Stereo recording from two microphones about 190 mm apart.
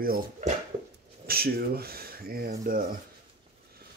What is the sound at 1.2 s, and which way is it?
Speech, 55° right (ahead or behind).